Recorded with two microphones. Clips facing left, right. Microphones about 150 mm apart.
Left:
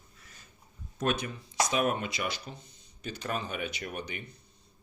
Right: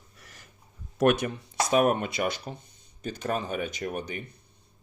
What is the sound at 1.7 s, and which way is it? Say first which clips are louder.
Speech: right 9 dB; 45° right (ahead or behind).